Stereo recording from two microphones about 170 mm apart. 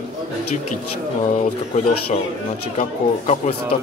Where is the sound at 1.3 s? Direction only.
50° left (ahead or behind).